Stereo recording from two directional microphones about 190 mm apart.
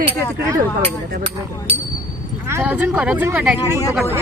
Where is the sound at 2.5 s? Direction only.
10° right (ahead or behind).